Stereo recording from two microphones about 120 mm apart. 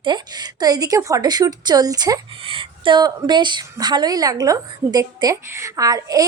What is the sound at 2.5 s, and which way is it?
Speech, 45° right (ahead or behind).